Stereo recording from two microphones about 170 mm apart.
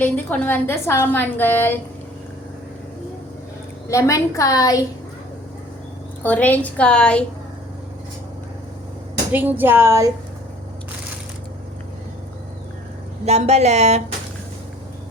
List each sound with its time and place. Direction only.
0.0 s a woman's voice: 10° left (ahead or behind)
3.8 s a woman's voice: 20° left (ahead or behind)
6.2 s a woman's voice: 10° left (ahead or behind)
9.3 s speech: 10° right (ahead or behind)
13.2 s speech: 40° right (ahead or behind)